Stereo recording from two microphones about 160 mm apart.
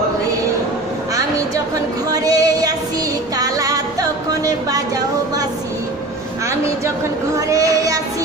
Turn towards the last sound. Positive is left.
turn(degrees=-20)  # may be behind; listen again after turning